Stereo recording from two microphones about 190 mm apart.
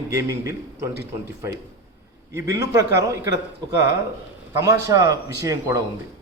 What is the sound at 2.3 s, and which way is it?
A man's voice, 15° right (ahead or behind).